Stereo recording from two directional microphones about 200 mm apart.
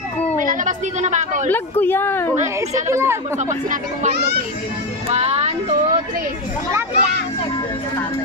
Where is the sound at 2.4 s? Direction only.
15° right (ahead or behind).